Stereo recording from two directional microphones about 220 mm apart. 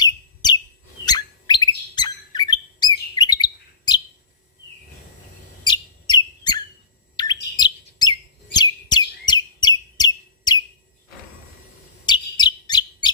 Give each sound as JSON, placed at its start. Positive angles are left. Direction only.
{"t": 0.0, "sound": "bird", "side_deg": 20}
{"t": 5.6, "sound": "bird", "side_deg": 20}
{"t": 7.2, "sound": "chirp", "side_deg": 20}
{"t": 12.0, "sound": "chirp", "side_deg": 20}